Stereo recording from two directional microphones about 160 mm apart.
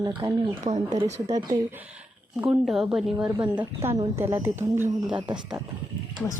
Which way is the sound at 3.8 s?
15° right (ahead or behind).